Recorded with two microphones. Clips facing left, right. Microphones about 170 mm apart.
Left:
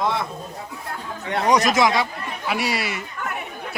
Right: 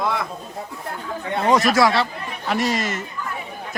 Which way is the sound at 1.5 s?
20° left (ahead or behind).